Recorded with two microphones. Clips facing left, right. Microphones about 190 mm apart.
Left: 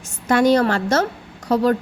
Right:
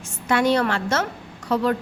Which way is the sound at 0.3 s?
40° left (ahead or behind).